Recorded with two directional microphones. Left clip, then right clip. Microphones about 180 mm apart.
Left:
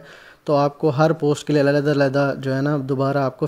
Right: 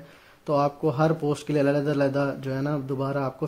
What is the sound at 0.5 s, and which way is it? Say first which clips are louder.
Speech: left 5 dB; 25° left (ahead or behind).